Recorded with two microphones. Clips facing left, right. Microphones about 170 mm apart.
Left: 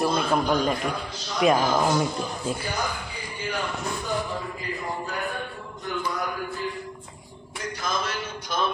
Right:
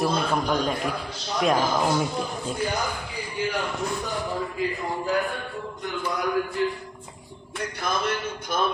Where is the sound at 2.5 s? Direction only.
5° left (ahead or behind).